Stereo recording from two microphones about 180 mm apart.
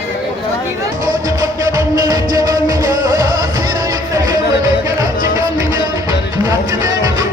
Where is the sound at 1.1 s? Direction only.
20° right (ahead or behind).